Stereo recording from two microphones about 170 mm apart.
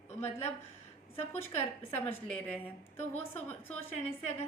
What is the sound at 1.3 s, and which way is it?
A woman's voice, 10° left (ahead or behind).